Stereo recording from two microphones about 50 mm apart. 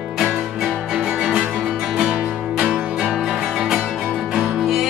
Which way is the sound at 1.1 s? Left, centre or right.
Right.